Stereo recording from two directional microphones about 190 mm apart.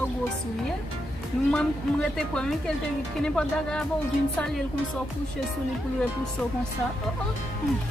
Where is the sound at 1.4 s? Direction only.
5° left (ahead or behind).